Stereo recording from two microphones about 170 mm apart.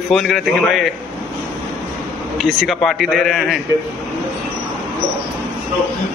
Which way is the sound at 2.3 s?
Centre (ahead or behind).